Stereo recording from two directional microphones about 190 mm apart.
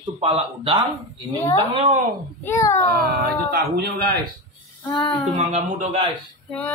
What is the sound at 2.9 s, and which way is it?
Speech, 55° right (ahead or behind).